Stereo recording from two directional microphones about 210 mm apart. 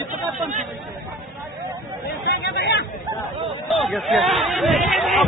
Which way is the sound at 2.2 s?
55° left (ahead or behind).